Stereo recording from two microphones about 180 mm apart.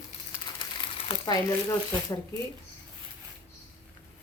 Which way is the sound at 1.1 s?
20° left (ahead or behind).